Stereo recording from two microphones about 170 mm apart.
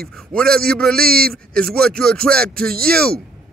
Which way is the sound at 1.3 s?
5° left (ahead or behind).